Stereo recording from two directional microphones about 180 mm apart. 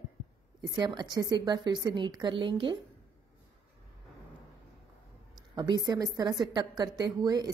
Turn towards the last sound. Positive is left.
turn(degrees=-20)  # may be behind; listen again after turning